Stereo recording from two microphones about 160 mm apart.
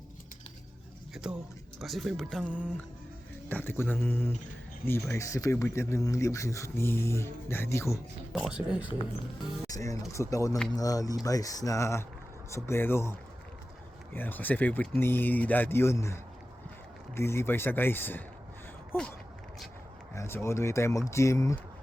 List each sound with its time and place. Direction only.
1.1 s speech: 5° right (ahead or behind)
2.4 s music: 10° right (ahead or behind)
3.5 s speech: 15° left (ahead or behind)
8.3 s speech: centre (ahead or behind)
8.9 s speech: 30° left (ahead or behind)
17.2 s speech: 15° left (ahead or behind)
20.1 s speech: 15° left (ahead or behind)